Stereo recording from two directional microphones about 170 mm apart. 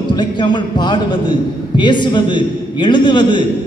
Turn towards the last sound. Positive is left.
turn(degrees=25)  # may be behind; listen again after turning